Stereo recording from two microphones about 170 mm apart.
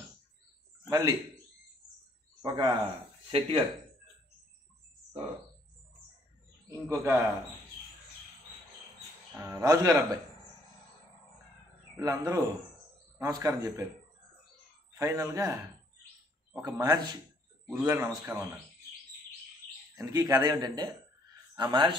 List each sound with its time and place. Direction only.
0.8 s a man's voice: 20° right (ahead or behind)
2.4 s a man's voice: 25° right (ahead or behind)
3.3 s speech: 35° right (ahead or behind)
6.9 s a man's voice: 15° right (ahead or behind)
9.4 s a man's voice: 15° right (ahead or behind)
12.0 s a man's voice: 20° right (ahead or behind)
15.0 s a man's voice: 20° right (ahead or behind)
16.6 s a man's voice: 20° right (ahead or behind)
20.0 s a man's voice: 20° right (ahead or behind)